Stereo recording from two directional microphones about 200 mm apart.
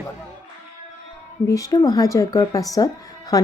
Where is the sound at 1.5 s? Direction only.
20° left (ahead or behind).